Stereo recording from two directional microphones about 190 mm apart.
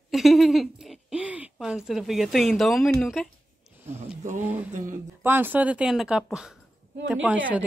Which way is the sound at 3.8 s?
10° right (ahead or behind).